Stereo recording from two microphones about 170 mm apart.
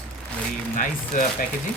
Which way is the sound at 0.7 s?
55° left (ahead or behind).